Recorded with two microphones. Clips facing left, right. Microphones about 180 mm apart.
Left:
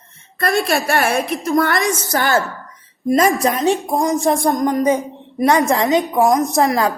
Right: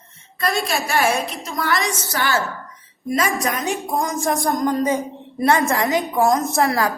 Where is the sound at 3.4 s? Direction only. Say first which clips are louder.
Left 7 dB; 35° left (ahead or behind).